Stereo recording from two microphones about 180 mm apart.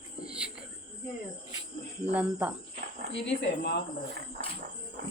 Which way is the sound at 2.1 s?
10° right (ahead or behind).